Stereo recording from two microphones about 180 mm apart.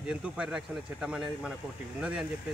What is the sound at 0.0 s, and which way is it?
Speech, 5° right (ahead or behind).